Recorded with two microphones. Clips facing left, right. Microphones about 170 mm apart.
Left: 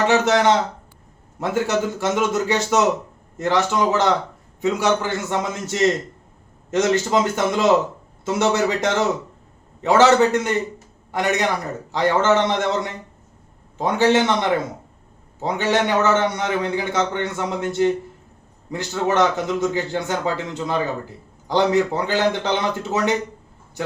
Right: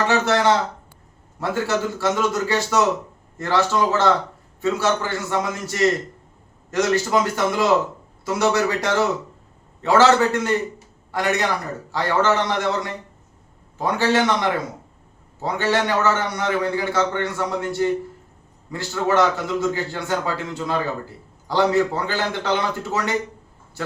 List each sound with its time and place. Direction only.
0.1 s a man's voice: 20° left (ahead or behind)
15.4 s a man's voice: 20° left (ahead or behind)